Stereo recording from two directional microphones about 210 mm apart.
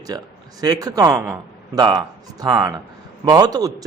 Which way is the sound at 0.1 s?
20° right (ahead or behind).